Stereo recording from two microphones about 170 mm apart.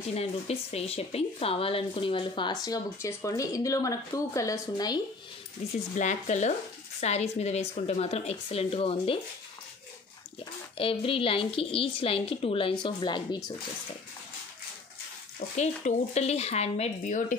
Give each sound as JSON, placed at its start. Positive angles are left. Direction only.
{"t": 0.1, "sound": "speech", "side_deg": 35}
{"t": 5.6, "sound": "speech", "side_deg": 40}
{"t": 10.8, "sound": "speech", "side_deg": 30}
{"t": 15.3, "sound": "speech", "side_deg": 45}